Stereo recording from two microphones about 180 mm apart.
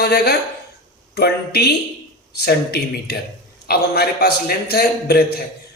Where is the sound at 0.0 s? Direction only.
65° left (ahead or behind).